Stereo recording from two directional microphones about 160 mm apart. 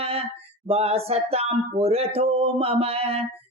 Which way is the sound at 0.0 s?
40° right (ahead or behind).